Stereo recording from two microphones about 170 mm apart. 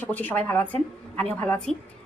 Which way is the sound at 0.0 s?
10° left (ahead or behind).